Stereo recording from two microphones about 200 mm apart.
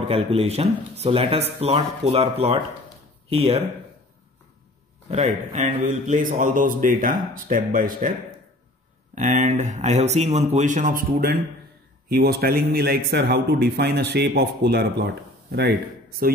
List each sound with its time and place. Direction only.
0.1 s a man's voice: 30° right (ahead or behind)
5.1 s a man's voice: 35° right (ahead or behind)
9.1 s a man's voice: 40° right (ahead or behind)